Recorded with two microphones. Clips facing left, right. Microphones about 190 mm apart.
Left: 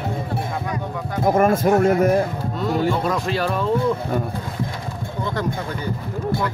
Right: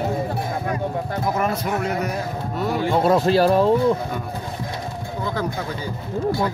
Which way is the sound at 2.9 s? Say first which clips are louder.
Right 6 dB; 30° right (ahead or behind).